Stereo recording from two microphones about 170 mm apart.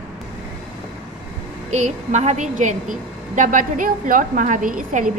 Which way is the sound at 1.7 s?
40° right (ahead or behind).